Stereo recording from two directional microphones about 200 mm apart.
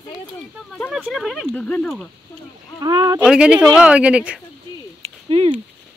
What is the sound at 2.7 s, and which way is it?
Speech, 20° right (ahead or behind).